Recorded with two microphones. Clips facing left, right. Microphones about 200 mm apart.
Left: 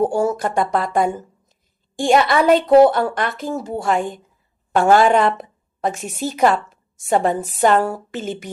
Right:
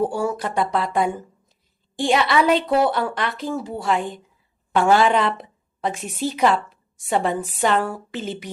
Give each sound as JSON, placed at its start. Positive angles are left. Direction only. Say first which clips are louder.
{"t": 0.0, "sound": "a woman's voice", "louder": "left 4 dB", "side_deg": 45}